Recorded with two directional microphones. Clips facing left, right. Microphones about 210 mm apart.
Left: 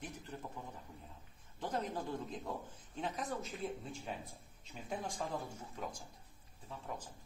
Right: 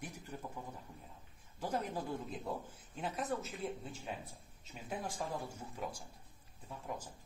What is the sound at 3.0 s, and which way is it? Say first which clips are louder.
Speech: right 1 dB; 5° right (ahead or behind).